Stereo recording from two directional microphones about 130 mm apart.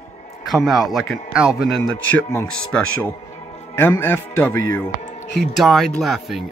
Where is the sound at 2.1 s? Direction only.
20° left (ahead or behind).